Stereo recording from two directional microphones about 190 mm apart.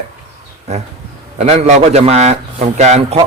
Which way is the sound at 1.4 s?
35° right (ahead or behind).